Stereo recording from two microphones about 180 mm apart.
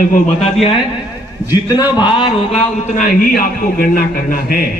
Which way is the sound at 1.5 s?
20° left (ahead or behind).